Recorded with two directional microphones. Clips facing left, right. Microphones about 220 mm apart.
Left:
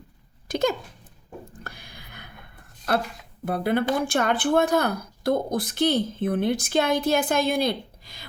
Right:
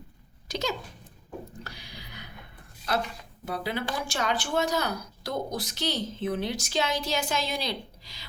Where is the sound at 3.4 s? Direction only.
55° left (ahead or behind).